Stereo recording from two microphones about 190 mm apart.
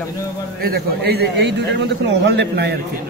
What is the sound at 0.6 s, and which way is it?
A man's voice, 55° right (ahead or behind).